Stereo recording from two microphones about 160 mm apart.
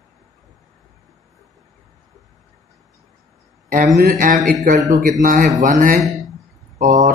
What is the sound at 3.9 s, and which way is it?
Speech, 80° right.